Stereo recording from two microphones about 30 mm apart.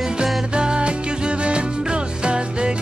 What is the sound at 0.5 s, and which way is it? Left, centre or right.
Music, right.